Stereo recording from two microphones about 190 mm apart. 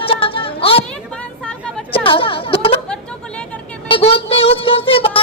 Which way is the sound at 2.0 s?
25° left (ahead or behind).